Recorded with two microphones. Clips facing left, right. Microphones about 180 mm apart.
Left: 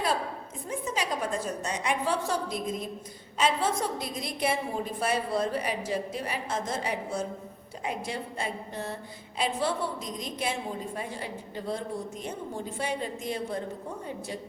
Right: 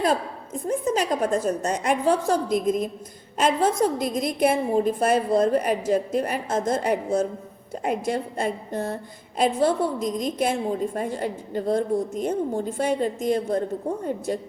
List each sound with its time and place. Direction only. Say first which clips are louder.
0.7 s a woman's voice: right 8 dB; 45° right (ahead or behind)